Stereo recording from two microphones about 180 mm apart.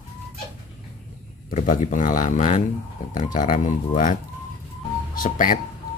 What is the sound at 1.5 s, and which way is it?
Speech, 45° left (ahead or behind).